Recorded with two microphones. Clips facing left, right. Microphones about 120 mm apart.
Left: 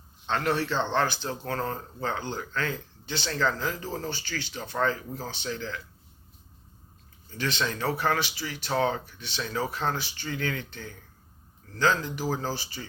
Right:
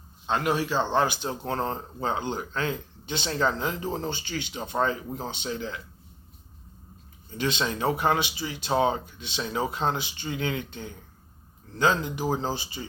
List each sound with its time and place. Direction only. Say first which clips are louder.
0.3 s speech: right 1 dB; 10° right (ahead or behind)
7.3 s speech: right 2 dB; 20° right (ahead or behind)